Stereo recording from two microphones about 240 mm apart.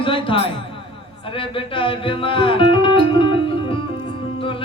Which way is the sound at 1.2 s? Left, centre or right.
Left.